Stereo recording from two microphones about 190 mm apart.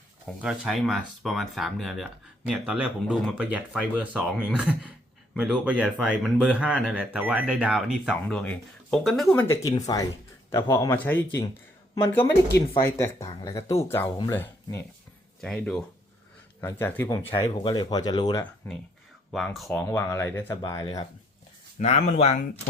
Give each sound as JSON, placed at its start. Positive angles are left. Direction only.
{"t": 0.4, "sound": "speech", "side_deg": 0}
{"t": 15.4, "sound": "speech", "side_deg": 5}
{"t": 17.3, "sound": "speech", "side_deg": 25}
{"t": 19.3, "sound": "speech", "side_deg": 0}
{"t": 21.8, "sound": "speech", "side_deg": 35}